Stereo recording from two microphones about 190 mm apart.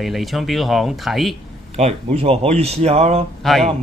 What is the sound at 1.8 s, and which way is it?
Speech, 35° right (ahead or behind).